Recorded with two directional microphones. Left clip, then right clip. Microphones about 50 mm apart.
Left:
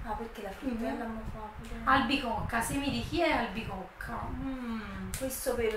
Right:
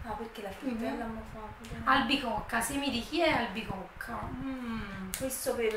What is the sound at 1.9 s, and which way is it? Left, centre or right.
A woman's voice, right.